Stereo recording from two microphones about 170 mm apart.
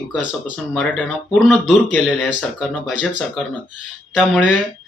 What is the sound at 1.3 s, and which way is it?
Speech, 5° right (ahead or behind).